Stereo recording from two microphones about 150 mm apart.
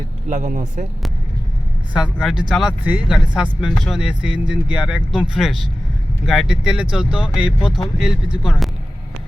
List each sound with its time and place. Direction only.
0.3 s speech: 55° right (ahead or behind)
2.0 s speech: 5° right (ahead or behind)